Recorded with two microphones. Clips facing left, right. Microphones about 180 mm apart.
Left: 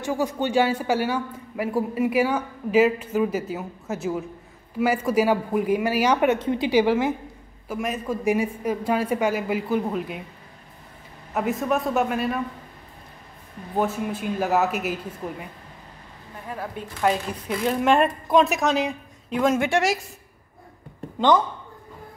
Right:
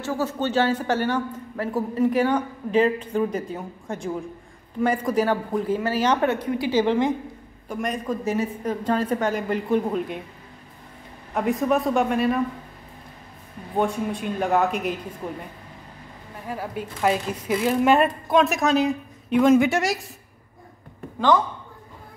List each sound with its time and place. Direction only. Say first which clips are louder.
0.0 s a man's voice: left 1 dB; 15° left (ahead or behind)
6.7 s a man's voice: even; 10° left (ahead or behind)
11.3 s a woman's voice: right 2 dB; centre (ahead or behind)
13.7 s a woman's voice: right 1 dB; 5° left (ahead or behind)
16.4 s a woman's voice: right 2 dB; 5° right (ahead or behind)